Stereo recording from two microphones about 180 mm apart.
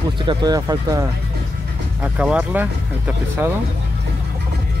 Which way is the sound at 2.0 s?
5° right (ahead or behind).